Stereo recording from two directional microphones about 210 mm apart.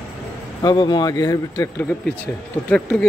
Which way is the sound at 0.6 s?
20° left (ahead or behind).